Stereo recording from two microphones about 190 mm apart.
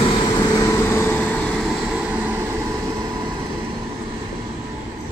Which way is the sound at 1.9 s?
10° right (ahead or behind).